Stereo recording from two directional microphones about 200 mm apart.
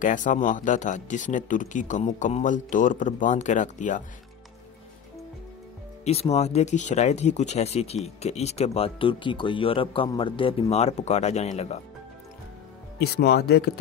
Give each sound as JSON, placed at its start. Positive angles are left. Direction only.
{"t": 0.0, "sound": "speech", "side_deg": 40}
{"t": 6.0, "sound": "speech", "side_deg": 30}
{"t": 13.0, "sound": "speech", "side_deg": 55}